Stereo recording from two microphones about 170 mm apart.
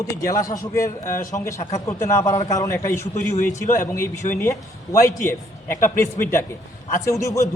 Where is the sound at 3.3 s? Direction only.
45° left (ahead or behind).